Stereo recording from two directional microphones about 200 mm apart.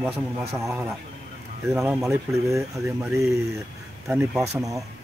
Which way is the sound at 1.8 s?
10° right (ahead or behind).